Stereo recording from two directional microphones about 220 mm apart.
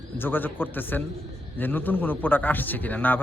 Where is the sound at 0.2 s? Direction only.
10° left (ahead or behind).